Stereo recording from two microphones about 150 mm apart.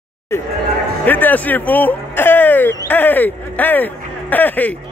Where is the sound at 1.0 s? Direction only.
10° left (ahead or behind).